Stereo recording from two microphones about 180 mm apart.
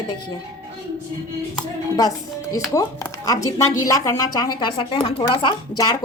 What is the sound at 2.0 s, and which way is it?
A woman's voice, 20° left (ahead or behind).